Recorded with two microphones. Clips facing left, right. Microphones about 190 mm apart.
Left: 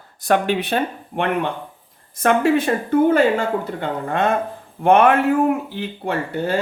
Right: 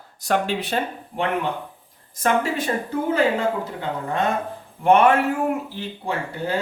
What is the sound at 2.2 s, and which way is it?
Speech, 60° left (ahead or behind).